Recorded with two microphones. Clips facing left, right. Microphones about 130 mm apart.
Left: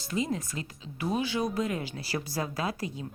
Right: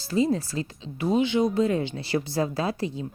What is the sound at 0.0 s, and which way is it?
A woman's voice, 30° right (ahead or behind).